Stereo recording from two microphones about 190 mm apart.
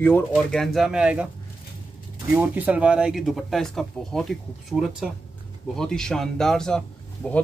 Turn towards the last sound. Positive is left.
turn(degrees=5)  # may be behind; listen again after turning